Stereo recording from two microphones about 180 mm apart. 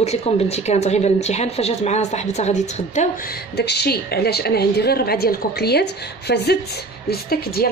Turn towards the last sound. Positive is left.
turn(degrees=60)  # may be behind; listen again after turning